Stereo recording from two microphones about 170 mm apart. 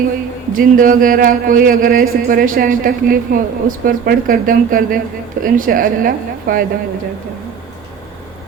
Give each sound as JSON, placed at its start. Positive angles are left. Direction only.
{"t": 0.5, "sound": "speech", "side_deg": -55}